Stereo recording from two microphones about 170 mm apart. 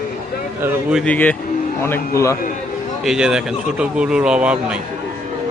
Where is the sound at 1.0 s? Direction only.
10° left (ahead or behind).